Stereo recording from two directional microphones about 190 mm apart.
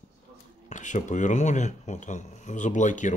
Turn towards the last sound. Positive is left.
turn(degrees=40)  # may be behind; listen again after turning